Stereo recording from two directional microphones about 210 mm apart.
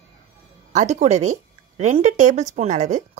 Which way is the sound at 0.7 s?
35° right (ahead or behind).